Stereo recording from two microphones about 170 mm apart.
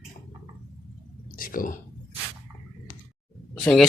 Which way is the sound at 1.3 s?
55° left (ahead or behind).